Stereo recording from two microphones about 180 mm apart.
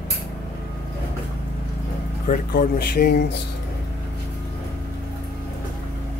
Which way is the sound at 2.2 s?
50° left (ahead or behind).